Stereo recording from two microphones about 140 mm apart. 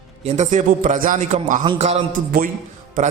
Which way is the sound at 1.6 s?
45° right (ahead or behind).